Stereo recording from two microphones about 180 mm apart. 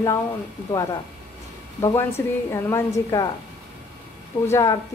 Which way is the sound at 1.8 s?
15° left (ahead or behind).